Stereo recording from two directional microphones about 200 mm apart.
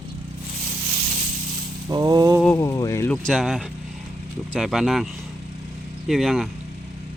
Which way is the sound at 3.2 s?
Centre (ahead or behind).